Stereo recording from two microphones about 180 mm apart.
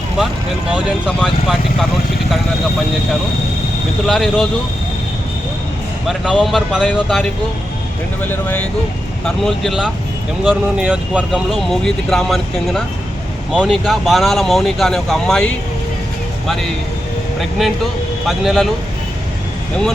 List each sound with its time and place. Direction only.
1.0 s speech: centre (ahead or behind)
4.0 s speech: centre (ahead or behind)
6.1 s speech: centre (ahead or behind)
8.3 s speech: 10° left (ahead or behind)
18.3 s speech: centre (ahead or behind)